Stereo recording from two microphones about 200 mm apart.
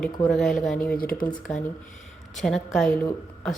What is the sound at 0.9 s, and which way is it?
Speech, 45° left (ahead or behind).